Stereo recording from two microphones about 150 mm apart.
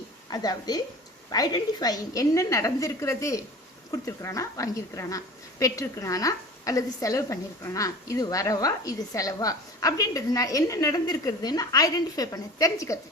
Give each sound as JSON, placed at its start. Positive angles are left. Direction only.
{"t": 0.3, "sound": "a woman's voice", "side_deg": 25}